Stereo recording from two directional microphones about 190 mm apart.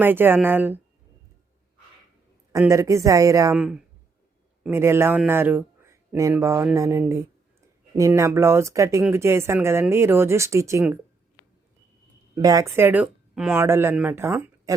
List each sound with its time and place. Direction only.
0.0 s speech: 10° right (ahead or behind)
2.5 s speech: 15° right (ahead or behind)
3.5 s speech: 5° right (ahead or behind)
12.3 s speech: 20° right (ahead or behind)